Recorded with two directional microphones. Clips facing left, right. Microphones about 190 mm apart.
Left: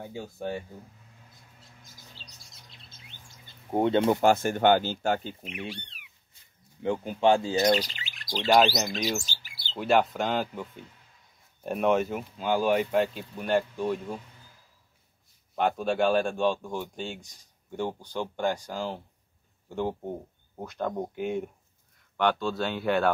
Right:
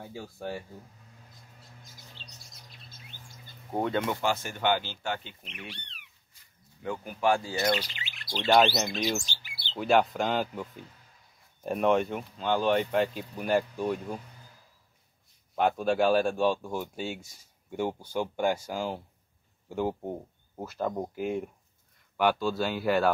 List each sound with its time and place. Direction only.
0.0 s speech: 20° left (ahead or behind)
2.2 s bird: 35° left (ahead or behind)
3.7 s speech: 25° left (ahead or behind)
4.2 s speech: 50° left (ahead or behind)
5.4 s speech: 10° left (ahead or behind)
6.8 s speech: 25° left (ahead or behind)
7.7 s chirp: 40° left (ahead or behind)
8.5 s speech: centre (ahead or behind)
9.2 s bird: 40° left (ahead or behind)
9.8 s speech: centre (ahead or behind)
15.5 s speech: centre (ahead or behind)